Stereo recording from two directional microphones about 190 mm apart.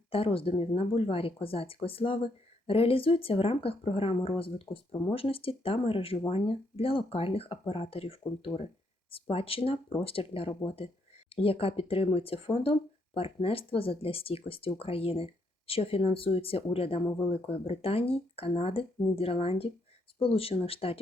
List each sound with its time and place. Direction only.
0.1 s speech: 30° left (ahead or behind)